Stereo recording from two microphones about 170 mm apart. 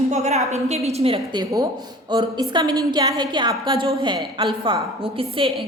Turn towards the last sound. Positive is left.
turn(degrees=-30)  # may be behind; listen again after turning